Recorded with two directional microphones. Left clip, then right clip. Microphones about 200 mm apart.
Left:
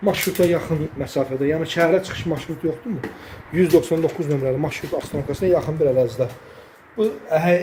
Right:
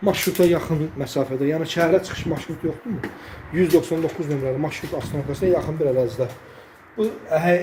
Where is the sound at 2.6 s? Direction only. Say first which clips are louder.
Left 3 dB; 10° left (ahead or behind).